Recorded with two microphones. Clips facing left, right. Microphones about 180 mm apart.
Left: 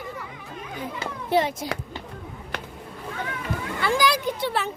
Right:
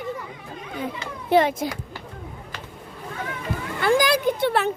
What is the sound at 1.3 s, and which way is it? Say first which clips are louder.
Speech: right 4 dB; 55° right (ahead or behind).